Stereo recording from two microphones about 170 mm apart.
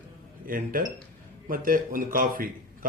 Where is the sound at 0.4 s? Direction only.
55° right (ahead or behind).